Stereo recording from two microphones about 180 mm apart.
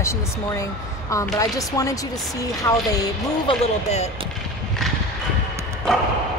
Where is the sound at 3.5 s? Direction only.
35° left (ahead or behind).